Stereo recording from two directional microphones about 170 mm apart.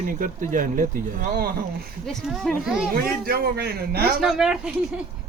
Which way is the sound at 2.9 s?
60° right (ahead or behind).